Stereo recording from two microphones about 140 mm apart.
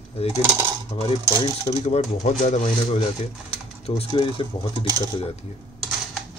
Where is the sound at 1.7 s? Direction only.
50° left (ahead or behind).